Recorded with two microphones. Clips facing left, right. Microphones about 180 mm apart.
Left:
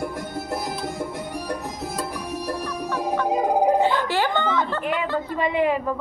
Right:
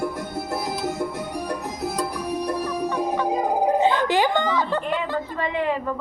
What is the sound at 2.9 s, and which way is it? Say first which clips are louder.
Music: left 2 dB; 15° right (ahead or behind).